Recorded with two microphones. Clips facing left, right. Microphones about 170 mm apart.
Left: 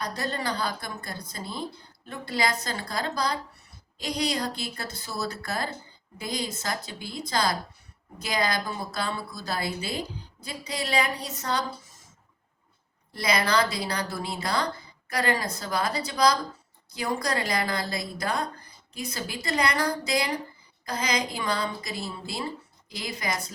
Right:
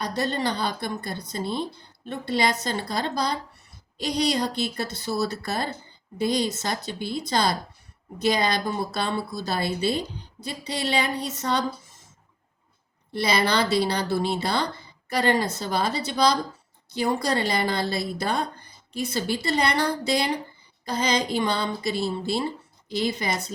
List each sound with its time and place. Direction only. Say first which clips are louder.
0.0 s speech: right 5 dB; 25° right (ahead or behind)
4.4 s speech: right 5 dB; 25° right (ahead or behind)
13.1 s speech: right 2 dB; 30° right (ahead or behind)